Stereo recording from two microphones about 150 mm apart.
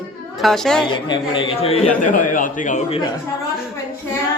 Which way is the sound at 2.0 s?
60° left (ahead or behind).